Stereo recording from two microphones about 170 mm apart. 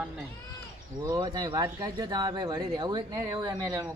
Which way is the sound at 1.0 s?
20° right (ahead or behind).